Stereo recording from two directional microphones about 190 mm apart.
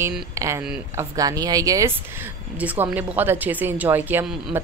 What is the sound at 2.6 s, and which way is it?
Speech, 10° right (ahead or behind).